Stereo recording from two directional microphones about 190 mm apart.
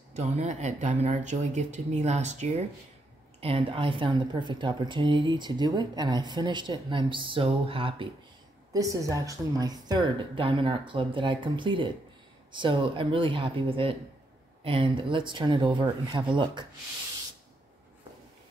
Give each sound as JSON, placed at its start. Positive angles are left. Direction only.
{"t": 0.1, "sound": "a woman's voice", "side_deg": -35}
{"t": 8.7, "sound": "a woman's voice", "side_deg": -15}